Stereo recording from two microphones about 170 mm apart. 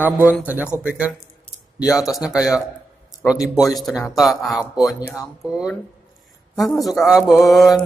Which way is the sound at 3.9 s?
20° left (ahead or behind).